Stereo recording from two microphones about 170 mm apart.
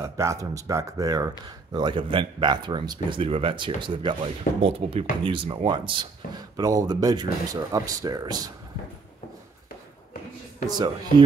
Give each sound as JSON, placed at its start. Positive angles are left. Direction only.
{"t": 0.0, "sound": "speech", "side_deg": -15}